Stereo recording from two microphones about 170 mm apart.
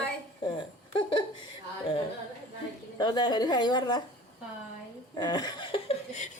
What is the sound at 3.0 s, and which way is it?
A woman's voice, 25° left (ahead or behind).